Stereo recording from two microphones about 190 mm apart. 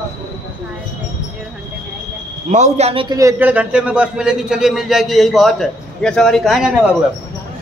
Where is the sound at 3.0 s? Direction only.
15° right (ahead or behind).